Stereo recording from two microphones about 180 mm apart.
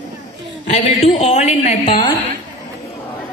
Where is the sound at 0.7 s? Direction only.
40° left (ahead or behind).